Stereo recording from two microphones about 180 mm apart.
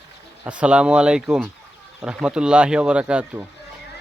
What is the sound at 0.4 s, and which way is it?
Speech, 5° right (ahead or behind).